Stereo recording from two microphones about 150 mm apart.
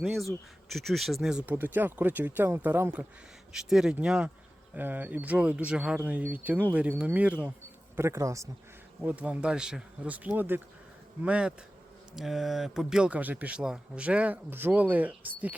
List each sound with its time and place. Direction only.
0.0 s speech: centre (ahead or behind); by 8.4 s 20° right (ahead or behind)
9.0 s speech: 10° right (ahead or behind)